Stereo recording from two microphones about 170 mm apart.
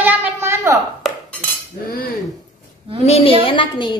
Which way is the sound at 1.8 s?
60° left (ahead or behind).